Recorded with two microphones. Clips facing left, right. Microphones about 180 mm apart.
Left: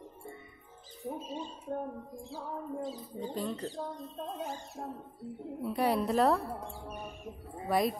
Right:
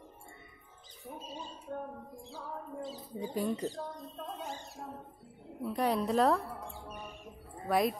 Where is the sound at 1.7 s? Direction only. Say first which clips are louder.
Left 4 dB; 40° left (ahead or behind).